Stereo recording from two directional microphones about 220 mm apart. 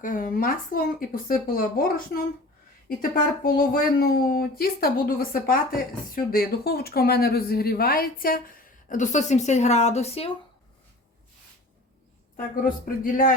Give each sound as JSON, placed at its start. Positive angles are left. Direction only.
{"t": 0.0, "sound": "speech", "side_deg": 40}
{"t": 3.0, "sound": "speech", "side_deg": 40}
{"t": 12.6, "sound": "speech", "side_deg": 40}